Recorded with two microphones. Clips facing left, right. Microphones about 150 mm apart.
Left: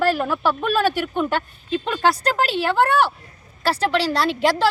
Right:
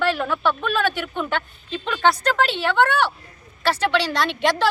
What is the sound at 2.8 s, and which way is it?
Speech, 35° left (ahead or behind).